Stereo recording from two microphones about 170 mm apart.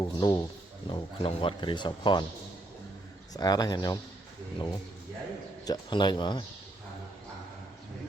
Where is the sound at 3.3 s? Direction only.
20° left (ahead or behind).